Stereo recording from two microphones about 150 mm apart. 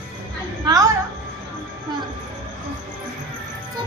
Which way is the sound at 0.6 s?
25° right (ahead or behind).